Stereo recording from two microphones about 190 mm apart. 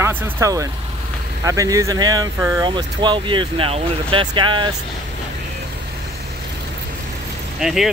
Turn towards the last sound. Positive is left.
turn(degrees=0)  # may be behind; listen again after turning